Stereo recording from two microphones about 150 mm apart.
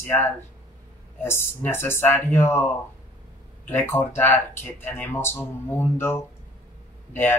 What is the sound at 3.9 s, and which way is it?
Speech, 15° left (ahead or behind).